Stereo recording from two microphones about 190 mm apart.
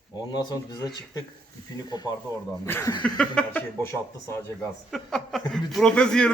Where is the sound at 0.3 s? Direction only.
20° left (ahead or behind).